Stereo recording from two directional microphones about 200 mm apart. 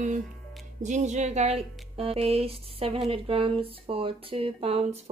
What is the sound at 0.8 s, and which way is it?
Speech, 35° right (ahead or behind).